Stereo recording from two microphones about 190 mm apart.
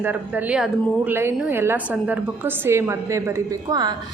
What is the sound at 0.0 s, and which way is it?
A woman's voice, 10° right (ahead or behind).